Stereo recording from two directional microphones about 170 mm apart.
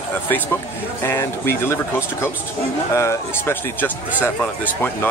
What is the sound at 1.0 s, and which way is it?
Speech, 15° left (ahead or behind).